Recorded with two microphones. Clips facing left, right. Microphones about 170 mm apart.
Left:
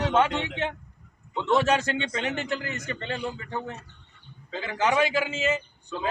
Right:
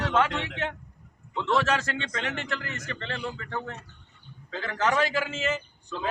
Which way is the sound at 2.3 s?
10° left (ahead or behind).